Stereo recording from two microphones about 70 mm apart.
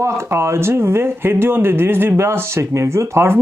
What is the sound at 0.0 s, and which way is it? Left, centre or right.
Speech, right.